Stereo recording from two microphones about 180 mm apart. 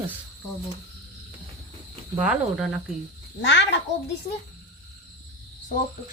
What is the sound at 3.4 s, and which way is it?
Speech, 80° left.